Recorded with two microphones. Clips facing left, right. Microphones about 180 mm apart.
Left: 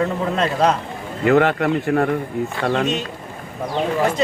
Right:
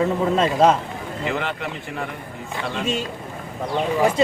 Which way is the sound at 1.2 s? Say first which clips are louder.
Left 11 dB; 50° left (ahead or behind).